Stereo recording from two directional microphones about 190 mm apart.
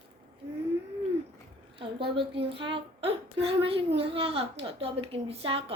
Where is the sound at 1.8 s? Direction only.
25° right (ahead or behind).